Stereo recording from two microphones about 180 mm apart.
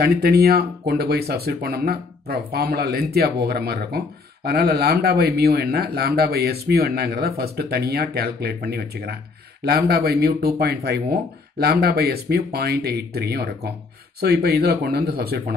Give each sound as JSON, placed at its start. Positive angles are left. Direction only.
{"t": 0.0, "sound": "speech", "side_deg": -60}